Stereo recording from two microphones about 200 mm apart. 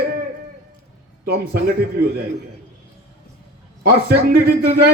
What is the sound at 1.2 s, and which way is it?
Speech, 50° right (ahead or behind).